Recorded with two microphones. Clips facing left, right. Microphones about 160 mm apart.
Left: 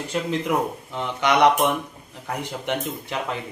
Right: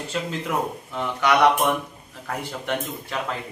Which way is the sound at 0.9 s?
20° left (ahead or behind).